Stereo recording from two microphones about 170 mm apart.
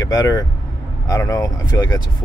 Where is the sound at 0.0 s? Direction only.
20° left (ahead or behind).